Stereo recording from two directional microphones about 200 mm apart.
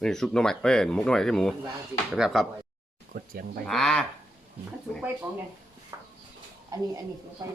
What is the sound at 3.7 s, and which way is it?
Speech, 5° left (ahead or behind).